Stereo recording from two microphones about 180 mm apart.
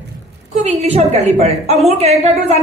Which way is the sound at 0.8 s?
35° right (ahead or behind).